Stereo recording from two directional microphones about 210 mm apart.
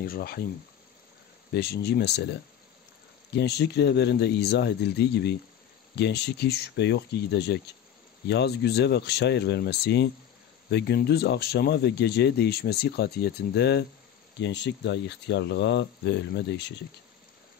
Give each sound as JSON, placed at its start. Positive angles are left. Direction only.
{"t": 0.0, "sound": "speech", "side_deg": 45}
{"t": 1.5, "sound": "speech", "side_deg": 50}